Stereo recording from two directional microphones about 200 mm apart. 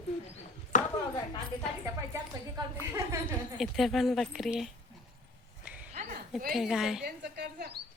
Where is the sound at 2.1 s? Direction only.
15° right (ahead or behind).